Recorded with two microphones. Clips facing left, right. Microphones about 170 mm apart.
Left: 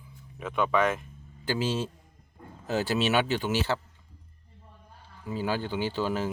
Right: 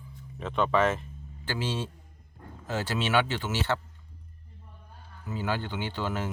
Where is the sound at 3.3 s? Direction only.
15° left (ahead or behind).